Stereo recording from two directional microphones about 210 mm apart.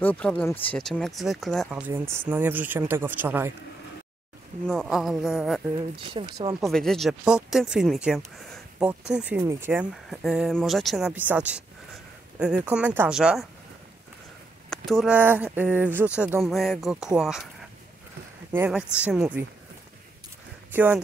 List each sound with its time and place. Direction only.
0.0 s speech: 5° left (ahead or behind); by 3.5 s 10° right (ahead or behind)
4.6 s speech: centre (ahead or behind)
6.0 s speech: 25° right (ahead or behind)
6.6 s speech: centre (ahead or behind)
14.9 s speech: centre (ahead or behind)
18.5 s speech: 5° right (ahead or behind)
20.7 s speech: 10° right (ahead or behind)